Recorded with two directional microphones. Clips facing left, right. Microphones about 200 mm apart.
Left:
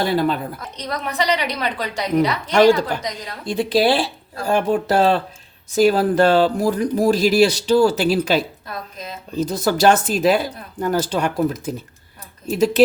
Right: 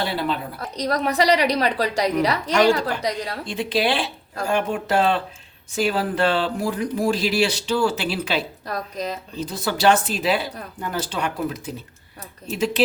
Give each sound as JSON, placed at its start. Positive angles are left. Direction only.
{"t": 0.0, "sound": "speech", "side_deg": 45}
{"t": 0.8, "sound": "a woman's voice", "side_deg": -35}
{"t": 2.6, "sound": "speech", "side_deg": 40}
{"t": 2.8, "sound": "a woman's voice", "side_deg": -35}
{"t": 3.4, "sound": "speech", "side_deg": 40}
{"t": 8.6, "sound": "a woman's voice", "side_deg": -40}
{"t": 9.3, "sound": "speech", "side_deg": 45}